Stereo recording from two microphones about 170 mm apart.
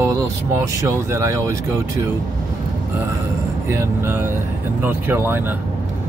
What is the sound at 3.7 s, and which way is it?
Speech, 15° right (ahead or behind).